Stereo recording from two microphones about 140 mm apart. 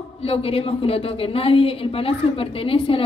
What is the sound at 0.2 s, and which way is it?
A woman's voice, 45° left (ahead or behind).